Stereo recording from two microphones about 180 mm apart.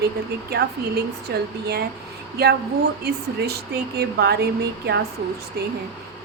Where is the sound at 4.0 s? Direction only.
60° right (ahead or behind).